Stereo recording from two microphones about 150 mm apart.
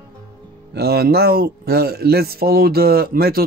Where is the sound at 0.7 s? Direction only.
90° right.